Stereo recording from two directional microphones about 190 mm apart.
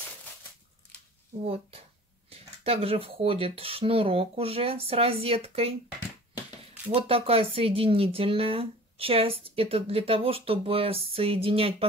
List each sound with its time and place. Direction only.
1.4 s speech: 30° right (ahead or behind)
6.9 s speech: 30° right (ahead or behind)